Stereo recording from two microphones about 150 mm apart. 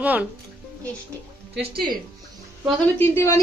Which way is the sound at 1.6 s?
35° right (ahead or behind).